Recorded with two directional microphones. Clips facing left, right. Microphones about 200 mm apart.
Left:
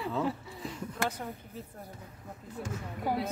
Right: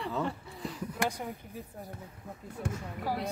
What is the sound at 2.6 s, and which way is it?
Speech, 60° right (ahead or behind).